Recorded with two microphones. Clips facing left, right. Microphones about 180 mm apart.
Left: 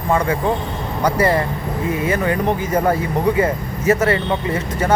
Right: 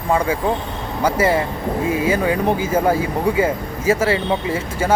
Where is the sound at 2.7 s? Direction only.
5° right (ahead or behind).